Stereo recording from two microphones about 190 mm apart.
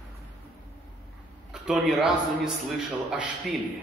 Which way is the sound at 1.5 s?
5° right (ahead or behind).